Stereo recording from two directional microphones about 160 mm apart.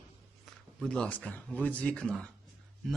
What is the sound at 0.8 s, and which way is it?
A man's voice, 5° left (ahead or behind).